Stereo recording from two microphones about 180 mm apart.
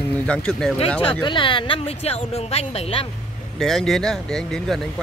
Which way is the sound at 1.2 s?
25° left (ahead or behind).